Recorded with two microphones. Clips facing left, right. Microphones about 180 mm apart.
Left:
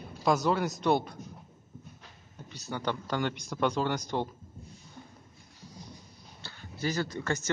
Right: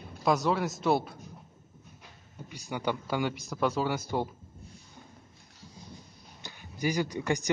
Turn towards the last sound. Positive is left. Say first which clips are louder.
# right 2 dB
turn(degrees=-15)  # may be behind; listen again after turning